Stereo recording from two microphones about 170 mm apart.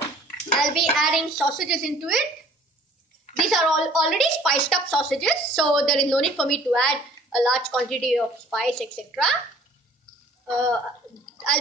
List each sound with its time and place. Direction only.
0.6 s a woman's voice: centre (ahead or behind)
3.3 s a woman's voice: centre (ahead or behind)